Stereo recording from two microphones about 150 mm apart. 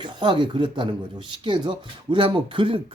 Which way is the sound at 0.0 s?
30° right (ahead or behind).